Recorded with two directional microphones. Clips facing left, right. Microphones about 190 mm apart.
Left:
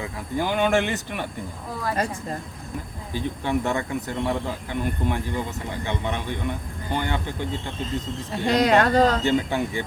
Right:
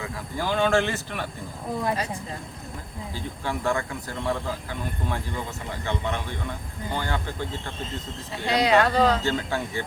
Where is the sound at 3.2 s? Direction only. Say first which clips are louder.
Left 7 dB; 20° left (ahead or behind).